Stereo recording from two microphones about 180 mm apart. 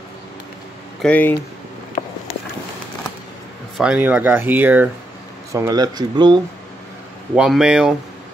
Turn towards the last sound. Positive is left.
turn(degrees=-5)  # may be behind; listen again after turning